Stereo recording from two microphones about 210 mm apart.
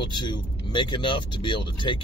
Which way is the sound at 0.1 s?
20° left (ahead or behind).